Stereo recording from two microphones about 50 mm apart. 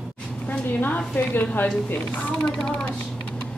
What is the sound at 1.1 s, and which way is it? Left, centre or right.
Speech, left.